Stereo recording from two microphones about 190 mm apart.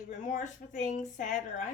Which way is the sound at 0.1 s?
40° left (ahead or behind).